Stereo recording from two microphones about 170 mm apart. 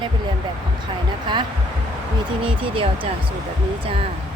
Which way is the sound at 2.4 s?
30° right (ahead or behind).